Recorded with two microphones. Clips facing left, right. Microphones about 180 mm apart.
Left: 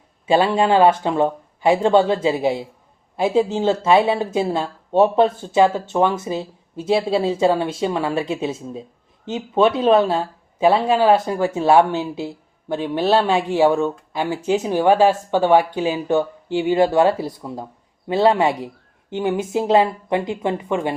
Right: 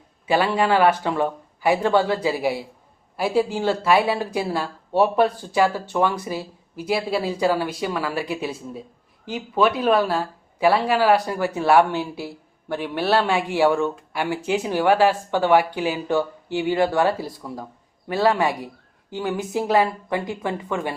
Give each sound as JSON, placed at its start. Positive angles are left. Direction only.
{"t": 0.3, "sound": "speech", "side_deg": 25}